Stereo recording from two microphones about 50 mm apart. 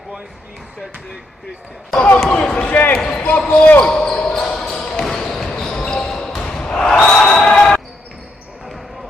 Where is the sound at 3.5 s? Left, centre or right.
Left.